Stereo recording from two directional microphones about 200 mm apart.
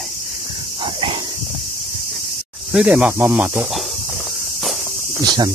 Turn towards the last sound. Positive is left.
turn(degrees=-20)  # may be behind; listen again after turning